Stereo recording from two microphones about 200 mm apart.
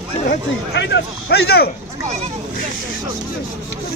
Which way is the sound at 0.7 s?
55° left (ahead or behind).